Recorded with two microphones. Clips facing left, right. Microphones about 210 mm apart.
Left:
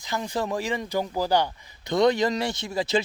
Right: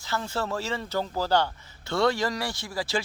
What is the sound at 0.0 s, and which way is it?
A man's voice, 15° left (ahead or behind).